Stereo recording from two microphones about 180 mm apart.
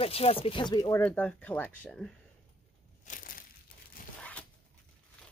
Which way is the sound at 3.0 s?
45° left (ahead or behind).